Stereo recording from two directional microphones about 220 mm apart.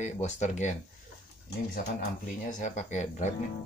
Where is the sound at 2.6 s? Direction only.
35° left (ahead or behind).